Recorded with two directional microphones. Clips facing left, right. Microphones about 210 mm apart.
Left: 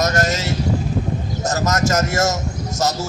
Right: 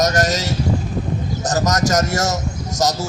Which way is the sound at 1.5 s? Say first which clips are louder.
Right 1 dB; 35° right (ahead or behind).